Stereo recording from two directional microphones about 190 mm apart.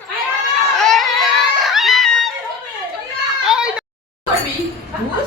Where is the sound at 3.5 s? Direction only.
5° right (ahead or behind).